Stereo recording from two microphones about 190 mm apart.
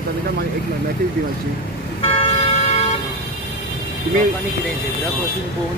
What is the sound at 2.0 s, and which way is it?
Vehicle, 30° left (ahead or behind).